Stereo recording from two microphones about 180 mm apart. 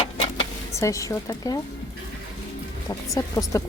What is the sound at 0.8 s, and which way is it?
Speech, 15° left (ahead or behind).